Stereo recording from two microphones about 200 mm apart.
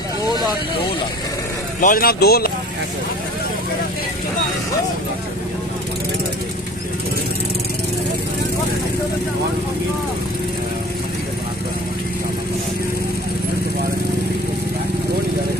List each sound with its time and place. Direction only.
1.8 s speech: 45° left (ahead or behind)